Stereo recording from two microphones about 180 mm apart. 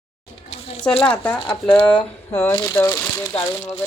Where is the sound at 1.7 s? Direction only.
30° left (ahead or behind).